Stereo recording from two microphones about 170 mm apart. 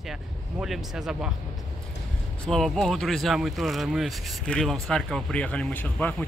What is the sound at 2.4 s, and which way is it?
Speech, 5° left (ahead or behind).